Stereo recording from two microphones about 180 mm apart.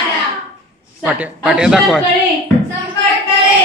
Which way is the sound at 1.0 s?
5° right (ahead or behind).